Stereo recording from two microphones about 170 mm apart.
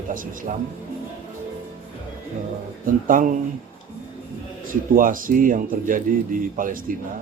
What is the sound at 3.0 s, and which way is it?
Speech, 55° right (ahead or behind).